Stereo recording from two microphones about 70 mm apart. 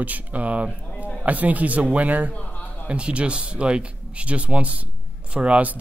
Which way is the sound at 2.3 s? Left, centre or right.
Left.